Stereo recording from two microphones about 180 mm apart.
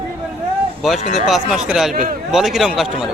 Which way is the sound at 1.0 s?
40° left (ahead or behind).